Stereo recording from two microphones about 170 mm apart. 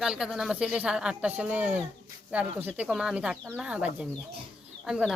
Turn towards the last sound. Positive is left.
turn(degrees=-5)  # may be behind; listen again after turning